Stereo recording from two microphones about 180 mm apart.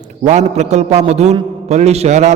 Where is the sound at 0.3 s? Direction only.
40° right (ahead or behind).